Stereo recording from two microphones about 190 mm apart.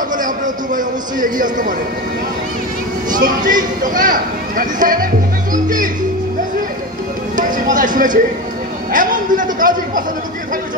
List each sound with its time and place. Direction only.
0.1 s a man's voice: 45° right (ahead or behind)
3.1 s children playing: 45° right (ahead or behind)
3.4 s speech: 45° right (ahead or behind)
7.3 s a sound: 45° right (ahead or behind)